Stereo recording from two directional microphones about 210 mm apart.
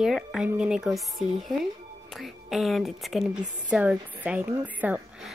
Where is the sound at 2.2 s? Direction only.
Centre (ahead or behind).